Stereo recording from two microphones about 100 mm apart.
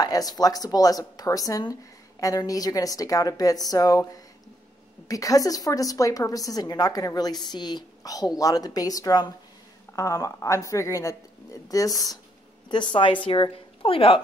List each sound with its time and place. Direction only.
0.0 s a woman's voice: 40° left (ahead or behind)
12.6 s a woman's voice: 55° left (ahead or behind)